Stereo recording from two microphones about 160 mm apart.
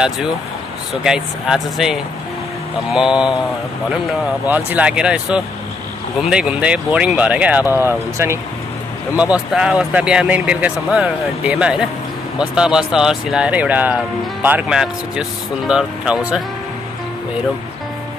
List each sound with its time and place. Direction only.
1.0 s speech: 5° right (ahead or behind)
4.6 s speech: 10° right (ahead or behind)